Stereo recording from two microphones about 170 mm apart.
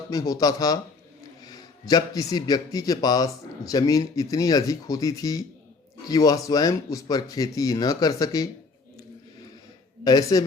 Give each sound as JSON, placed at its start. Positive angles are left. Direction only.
{"t": 0.1, "sound": "a man's voice", "side_deg": 20}
{"t": 10.0, "sound": "a man's voice", "side_deg": 25}